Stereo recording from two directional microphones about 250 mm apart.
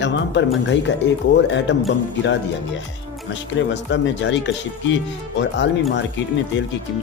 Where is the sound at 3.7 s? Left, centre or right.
Left.